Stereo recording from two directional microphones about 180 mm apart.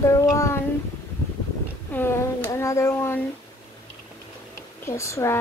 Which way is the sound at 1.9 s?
15° left (ahead or behind).